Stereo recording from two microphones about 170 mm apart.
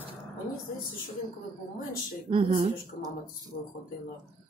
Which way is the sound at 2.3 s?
30° right (ahead or behind).